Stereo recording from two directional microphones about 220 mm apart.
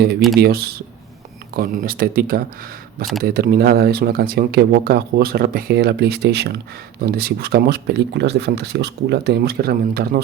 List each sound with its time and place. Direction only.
0.3 s speech: 45° right (ahead or behind)